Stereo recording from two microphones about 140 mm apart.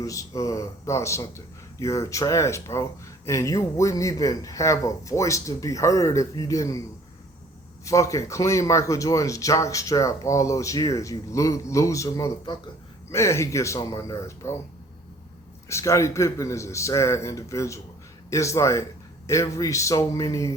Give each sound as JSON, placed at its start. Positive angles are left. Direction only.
{"t": 0.0, "sound": "speech", "side_deg": 25}
{"t": 7.9, "sound": "speech", "side_deg": 20}
{"t": 15.7, "sound": "speech", "side_deg": 20}